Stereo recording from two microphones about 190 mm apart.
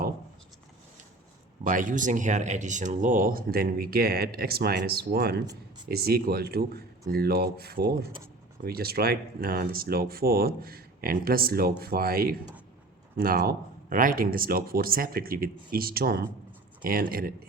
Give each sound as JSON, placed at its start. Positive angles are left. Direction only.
{"t": 1.6, "sound": "speech", "side_deg": -45}